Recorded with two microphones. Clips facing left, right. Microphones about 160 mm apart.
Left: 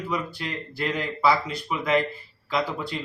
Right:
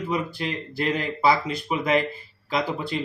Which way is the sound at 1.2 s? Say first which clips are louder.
Right 1 dB; 20° right (ahead or behind).